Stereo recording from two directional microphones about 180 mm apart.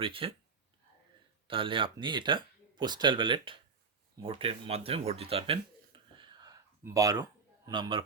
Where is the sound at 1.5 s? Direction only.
30° right (ahead or behind).